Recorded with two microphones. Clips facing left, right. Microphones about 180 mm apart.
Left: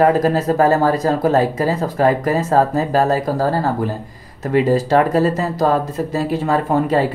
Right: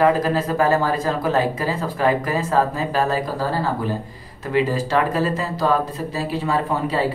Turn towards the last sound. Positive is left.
turn(degrees=45)  # may be behind; listen again after turning